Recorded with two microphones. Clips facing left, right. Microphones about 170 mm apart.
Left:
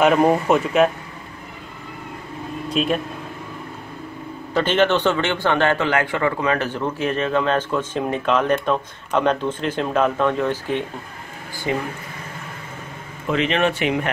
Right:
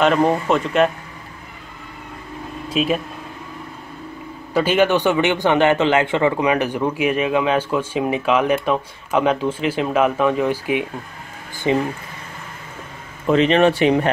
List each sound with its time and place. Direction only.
0.0 s speech: 10° left (ahead or behind)
2.7 s speech: 5° right (ahead or behind)
4.6 s a man's voice: 10° right (ahead or behind)
11.7 s speech: 20° right (ahead or behind)
13.3 s speech: 35° right (ahead or behind)